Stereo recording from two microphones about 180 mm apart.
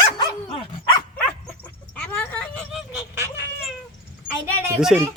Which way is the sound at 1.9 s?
10° left (ahead or behind).